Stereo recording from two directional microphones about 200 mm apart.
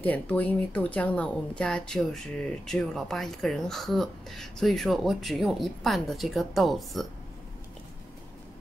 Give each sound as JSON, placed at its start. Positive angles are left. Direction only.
{"t": 0.0, "sound": "speech", "side_deg": 5}